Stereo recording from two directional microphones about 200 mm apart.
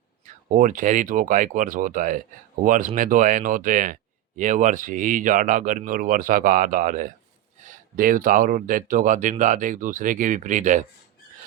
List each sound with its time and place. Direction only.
0.3 s speech: 40° right (ahead or behind)